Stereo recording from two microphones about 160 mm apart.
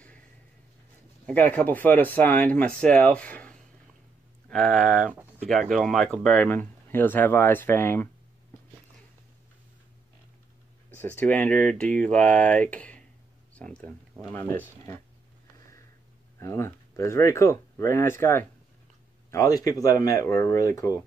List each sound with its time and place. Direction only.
1.2 s speech: 10° left (ahead or behind)
11.0 s speech: 10° left (ahead or behind)
16.3 s speech: 15° left (ahead or behind)